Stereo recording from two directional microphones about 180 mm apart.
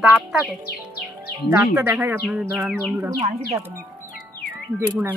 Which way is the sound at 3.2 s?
35° right (ahead or behind).